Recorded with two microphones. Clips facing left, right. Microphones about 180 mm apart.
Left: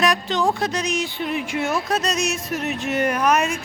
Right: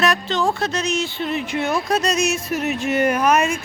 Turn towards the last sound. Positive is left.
turn(degrees=0)  # may be behind; listen again after turning